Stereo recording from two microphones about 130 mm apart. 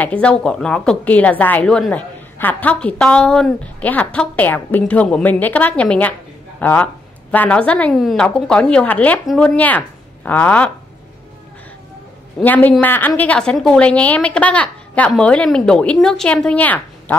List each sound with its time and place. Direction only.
0.0 s a woman's voice: 10° left (ahead or behind)
7.9 s a woman's voice: centre (ahead or behind)
12.4 s a woman's voice: 15° left (ahead or behind)